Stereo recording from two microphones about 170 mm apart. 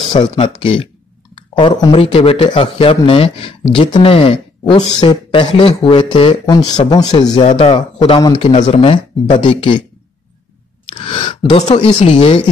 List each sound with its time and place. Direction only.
0.1 s speech: 30° left (ahead or behind)
1.3 s a sound: 30° left (ahead or behind)
1.9 s speech: 35° left (ahead or behind)
7.3 s speech: 35° left (ahead or behind)
11.2 s speech: 30° left (ahead or behind)